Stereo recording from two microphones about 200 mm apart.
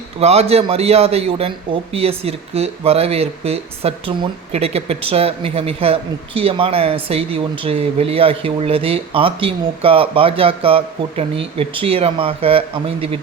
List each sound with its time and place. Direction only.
0.2 s speech: 30° right (ahead or behind)